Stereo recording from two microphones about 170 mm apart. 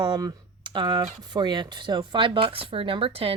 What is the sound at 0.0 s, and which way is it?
Speech, 25° right (ahead or behind).